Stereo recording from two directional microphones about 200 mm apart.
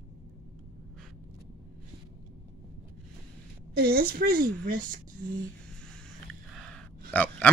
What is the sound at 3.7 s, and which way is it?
Speech, 50° right (ahead or behind).